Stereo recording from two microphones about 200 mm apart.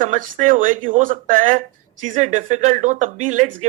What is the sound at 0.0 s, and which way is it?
Speech, 40° right (ahead or behind).